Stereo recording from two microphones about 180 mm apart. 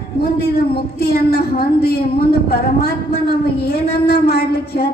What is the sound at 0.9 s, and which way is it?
A woman's voice, 60° left (ahead or behind).